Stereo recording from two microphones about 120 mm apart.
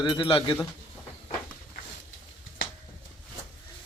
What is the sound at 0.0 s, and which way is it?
Speech, 40° left (ahead or behind).